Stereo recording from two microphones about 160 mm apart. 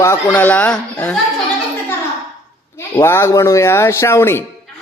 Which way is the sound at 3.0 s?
15° left (ahead or behind).